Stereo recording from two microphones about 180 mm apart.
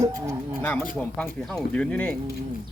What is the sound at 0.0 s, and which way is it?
Speech, 15° right (ahead or behind).